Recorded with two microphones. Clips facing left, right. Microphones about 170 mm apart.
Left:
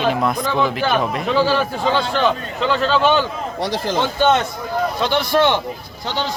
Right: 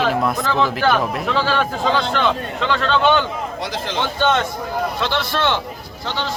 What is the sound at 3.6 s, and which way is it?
Speech, 35° left (ahead or behind).